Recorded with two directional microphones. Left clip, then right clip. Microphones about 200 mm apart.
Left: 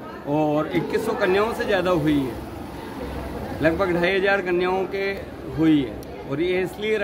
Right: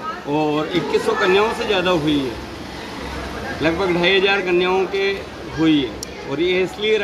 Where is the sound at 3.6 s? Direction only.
15° left (ahead or behind).